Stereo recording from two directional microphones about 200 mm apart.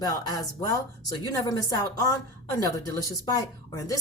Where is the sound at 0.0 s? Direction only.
15° left (ahead or behind).